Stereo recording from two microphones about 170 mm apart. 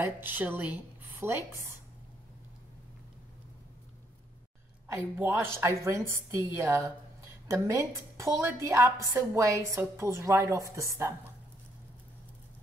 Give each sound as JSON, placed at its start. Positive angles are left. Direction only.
{"t": 0.0, "sound": "a woman's voice", "side_deg": -10}
{"t": 4.8, "sound": "a woman's voice", "side_deg": -15}